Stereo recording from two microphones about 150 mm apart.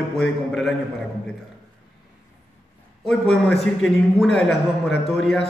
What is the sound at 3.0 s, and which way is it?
A man's voice, 5° left (ahead or behind).